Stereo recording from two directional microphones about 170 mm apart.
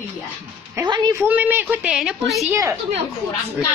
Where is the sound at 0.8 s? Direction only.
25° right (ahead or behind).